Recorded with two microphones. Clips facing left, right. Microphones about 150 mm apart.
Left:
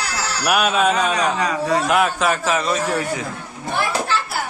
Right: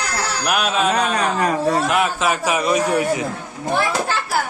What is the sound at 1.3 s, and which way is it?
Speech, 50° right (ahead or behind).